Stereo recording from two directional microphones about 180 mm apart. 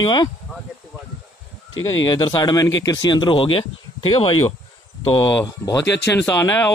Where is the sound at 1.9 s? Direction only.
20° left (ahead or behind).